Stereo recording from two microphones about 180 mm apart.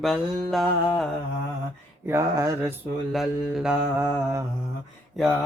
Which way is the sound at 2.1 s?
15° right (ahead or behind).